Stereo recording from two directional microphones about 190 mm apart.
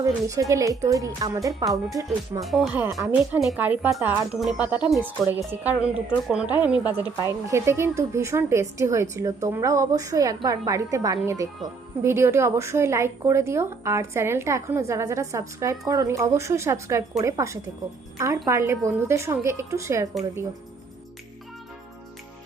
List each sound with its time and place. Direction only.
0.0 s a woman's voice: 15° right (ahead or behind)
2.4 s a woman's voice: centre (ahead or behind)